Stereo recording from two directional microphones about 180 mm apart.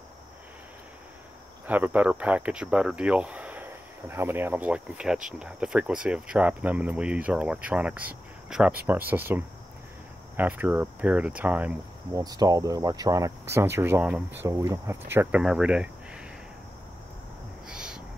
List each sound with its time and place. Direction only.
1.7 s speech: 10° right (ahead or behind)
12.2 s speech: 20° right (ahead or behind); by 15.9 s 5° right (ahead or behind)
17.6 s owl: 5° right (ahead or behind)